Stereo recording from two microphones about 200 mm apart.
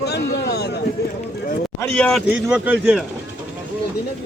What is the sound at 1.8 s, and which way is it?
Speech, 5° left (ahead or behind).